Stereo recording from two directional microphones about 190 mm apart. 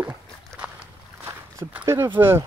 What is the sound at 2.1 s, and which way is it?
Speech, 10° right (ahead or behind).